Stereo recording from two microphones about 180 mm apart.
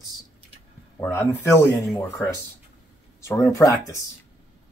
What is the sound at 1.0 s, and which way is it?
Speech, 15° left (ahead or behind).